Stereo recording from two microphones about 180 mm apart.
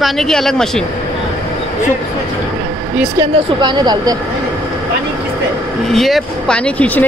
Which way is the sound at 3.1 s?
25° right (ahead or behind).